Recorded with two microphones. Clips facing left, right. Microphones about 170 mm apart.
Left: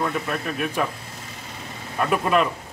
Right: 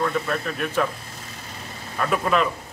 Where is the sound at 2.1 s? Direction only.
5° left (ahead or behind).